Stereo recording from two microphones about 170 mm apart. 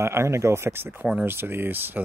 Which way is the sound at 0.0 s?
15° right (ahead or behind).